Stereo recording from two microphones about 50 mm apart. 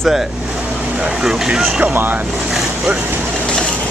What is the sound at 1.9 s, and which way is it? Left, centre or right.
Speech, right.